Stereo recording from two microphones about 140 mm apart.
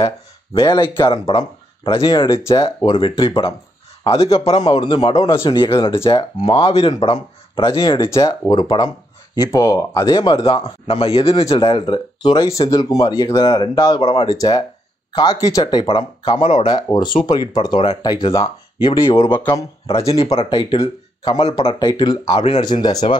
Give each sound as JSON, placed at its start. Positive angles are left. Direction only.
{"t": 0.6, "sound": "speech", "side_deg": 35}
{"t": 8.1, "sound": "speech", "side_deg": 25}
{"t": 9.4, "sound": "speech", "side_deg": 20}
{"t": 10.4, "sound": "speech", "side_deg": 45}
{"t": 12.5, "sound": "speech", "side_deg": 25}
{"t": 13.4, "sound": "speech", "side_deg": 35}
{"t": 19.2, "sound": "speech", "side_deg": 15}
{"t": 20.1, "sound": "speech", "side_deg": 45}
{"t": 21.7, "sound": "speech", "side_deg": 30}